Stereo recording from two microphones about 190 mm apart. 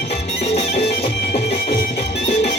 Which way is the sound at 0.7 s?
60° left (ahead or behind).